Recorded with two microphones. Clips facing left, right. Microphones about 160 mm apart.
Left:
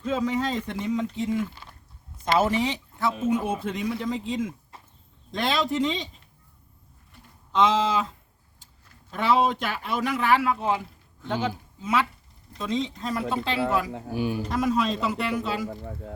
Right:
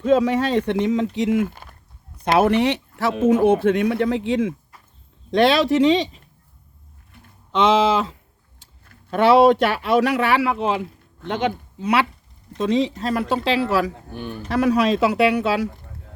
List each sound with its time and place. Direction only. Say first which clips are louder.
0.0 s speech: right 8 dB; 70° right (ahead or behind)
4.7 s a sound: left 2 dB; 25° left (ahead or behind)
5.3 s speech: right 10 dB; 75° right (ahead or behind)
7.5 s speech: right 5 dB; 85° right
8.5 s speech: right 4 dB; 70° right (ahead or behind); by 13.9 s 85° right
14.1 s speech: left 4 dB; 5° left (ahead or behind)
14.4 s speech: right 10 dB; 75° right (ahead or behind)